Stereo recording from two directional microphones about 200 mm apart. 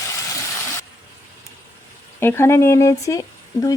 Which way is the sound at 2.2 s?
10° left (ahead or behind).